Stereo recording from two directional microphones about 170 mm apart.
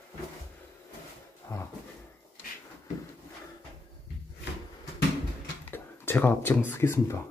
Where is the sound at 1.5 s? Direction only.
20° left (ahead or behind).